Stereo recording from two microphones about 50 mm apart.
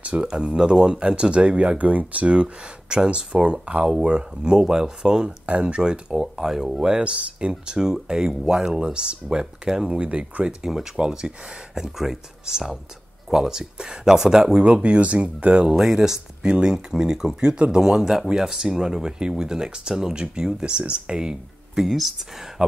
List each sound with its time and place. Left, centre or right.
0.0 s speech: right
0.3 s speech: centre
9.8 s speech: right
10.4 s speech: centre
14.6 s speech: right
15.7 s speech: centre
21.8 s speech: centre
22.6 s speech: centre